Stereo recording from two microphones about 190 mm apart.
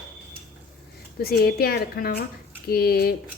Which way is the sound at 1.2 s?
55° left (ahead or behind).